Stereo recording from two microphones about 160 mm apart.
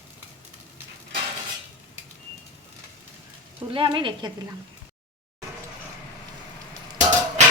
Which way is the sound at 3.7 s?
30° right (ahead or behind).